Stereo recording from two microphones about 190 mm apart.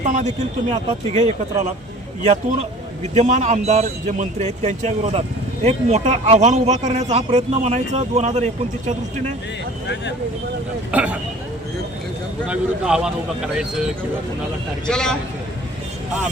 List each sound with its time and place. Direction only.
0.0 s speech: 40° right (ahead or behind)
10.9 s speech: 5° right (ahead or behind)
12.5 s speech: 5° right (ahead or behind)
14.8 s speech: 5° left (ahead or behind)